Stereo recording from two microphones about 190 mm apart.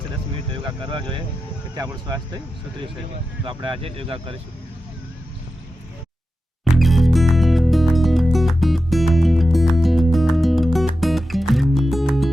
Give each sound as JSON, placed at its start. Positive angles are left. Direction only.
{"t": 0.5, "sound": "speech", "side_deg": -25}
{"t": 3.4, "sound": "speech", "side_deg": -25}
{"t": 6.7, "sound": "music", "side_deg": 0}